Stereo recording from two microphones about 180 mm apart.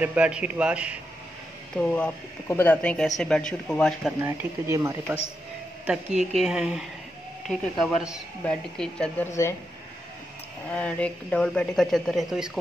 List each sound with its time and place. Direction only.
0.0 s a man's voice: 5° right (ahead or behind)
1.8 s speech: 5° left (ahead or behind)
4.2 s a man's voice: 15° right (ahead or behind)
6.3 s speech: 5° right (ahead or behind)
9.3 s speech: 15° left (ahead or behind)
10.7 s speech: 5° left (ahead or behind)